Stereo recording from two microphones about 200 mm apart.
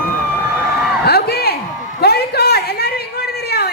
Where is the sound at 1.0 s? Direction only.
55° left (ahead or behind).